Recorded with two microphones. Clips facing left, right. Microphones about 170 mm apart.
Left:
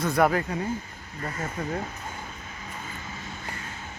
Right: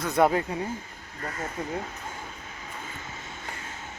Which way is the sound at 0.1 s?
25° right (ahead or behind).